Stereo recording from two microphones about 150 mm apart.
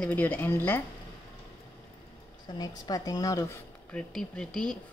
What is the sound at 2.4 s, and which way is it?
A woman's voice, 30° left (ahead or behind).